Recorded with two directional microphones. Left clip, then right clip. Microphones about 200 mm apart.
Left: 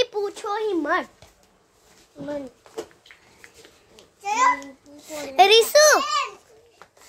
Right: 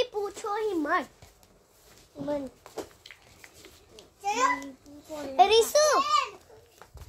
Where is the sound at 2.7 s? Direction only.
55° right (ahead or behind).